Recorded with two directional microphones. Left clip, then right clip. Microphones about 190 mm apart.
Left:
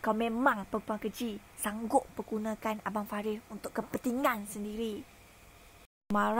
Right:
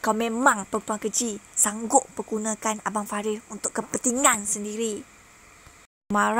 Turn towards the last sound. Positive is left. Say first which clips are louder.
# right 7 dB
turn(degrees=-20)  # may be behind; listen again after turning